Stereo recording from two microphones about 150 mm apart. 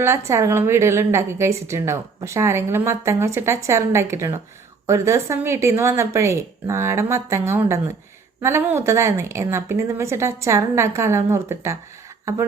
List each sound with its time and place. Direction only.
0.0 s a woman's voice: 15° right (ahead or behind)